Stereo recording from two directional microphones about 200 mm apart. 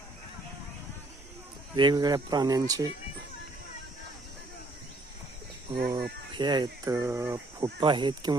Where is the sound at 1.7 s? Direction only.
20° right (ahead or behind).